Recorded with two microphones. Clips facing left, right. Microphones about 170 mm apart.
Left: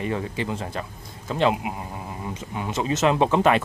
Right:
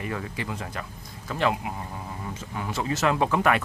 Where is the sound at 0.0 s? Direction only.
25° left (ahead or behind).